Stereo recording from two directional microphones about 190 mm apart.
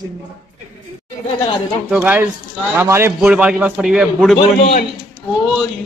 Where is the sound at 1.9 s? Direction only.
10° right (ahead or behind).